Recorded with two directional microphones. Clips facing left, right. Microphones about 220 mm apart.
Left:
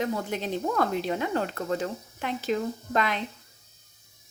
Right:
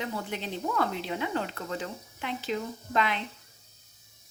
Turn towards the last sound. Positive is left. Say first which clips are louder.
# left 2 dB
turn(degrees=45)  # may be behind; listen again after turning